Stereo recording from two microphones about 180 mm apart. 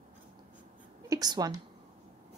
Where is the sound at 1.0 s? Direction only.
20° right (ahead or behind).